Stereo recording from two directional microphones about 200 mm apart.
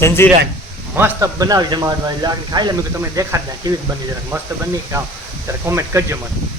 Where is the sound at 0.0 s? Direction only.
10° left (ahead or behind).